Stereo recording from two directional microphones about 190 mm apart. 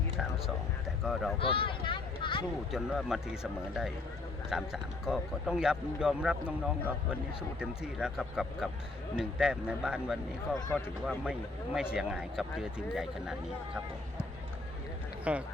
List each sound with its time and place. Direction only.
1.0 s speech: centre (ahead or behind)
1.4 s a sound: 30° left (ahead or behind)
2.7 s speech: 5° right (ahead or behind)
15.2 s speech: 5° right (ahead or behind)